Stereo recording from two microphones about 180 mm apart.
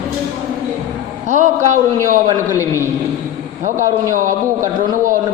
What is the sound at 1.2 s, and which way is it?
Speech, 40° right (ahead or behind).